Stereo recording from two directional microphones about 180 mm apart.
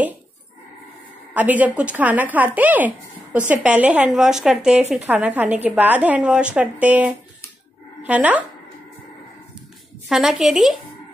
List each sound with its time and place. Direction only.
1.3 s a woman's voice: 10° right (ahead or behind)
10.0 s a woman's voice: centre (ahead or behind)